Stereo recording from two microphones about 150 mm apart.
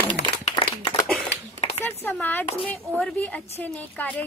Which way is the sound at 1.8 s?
10° left (ahead or behind).